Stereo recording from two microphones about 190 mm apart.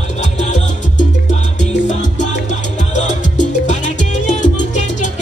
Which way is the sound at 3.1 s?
40° left (ahead or behind).